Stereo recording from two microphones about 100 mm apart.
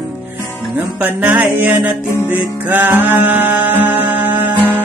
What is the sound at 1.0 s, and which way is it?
Music, 15° right (ahead or behind).